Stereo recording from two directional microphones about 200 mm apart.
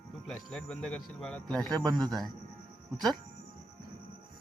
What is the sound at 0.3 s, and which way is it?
A man's voice, 5° left (ahead or behind).